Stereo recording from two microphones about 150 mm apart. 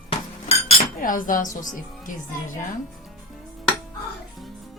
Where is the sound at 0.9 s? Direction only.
65° left (ahead or behind).